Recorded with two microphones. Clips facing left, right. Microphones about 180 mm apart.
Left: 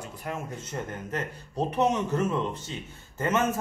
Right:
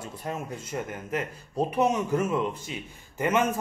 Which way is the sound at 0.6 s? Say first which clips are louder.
Right 1 dB; 10° right (ahead or behind).